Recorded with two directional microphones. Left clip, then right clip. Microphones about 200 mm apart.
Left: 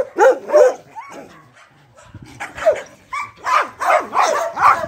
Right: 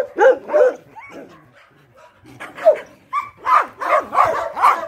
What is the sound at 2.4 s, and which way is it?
Dog, 20° left (ahead or behind).